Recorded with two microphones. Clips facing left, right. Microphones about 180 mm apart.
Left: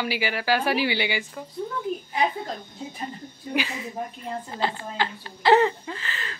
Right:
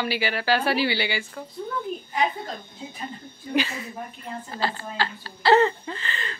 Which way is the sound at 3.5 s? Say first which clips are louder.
Right 2 dB; 15° left (ahead or behind).